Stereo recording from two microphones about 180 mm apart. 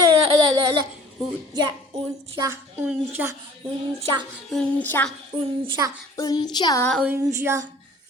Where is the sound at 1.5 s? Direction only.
25° right (ahead or behind).